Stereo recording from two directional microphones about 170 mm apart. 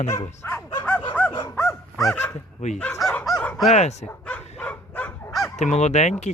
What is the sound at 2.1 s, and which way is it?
Speech, 10° left (ahead or behind).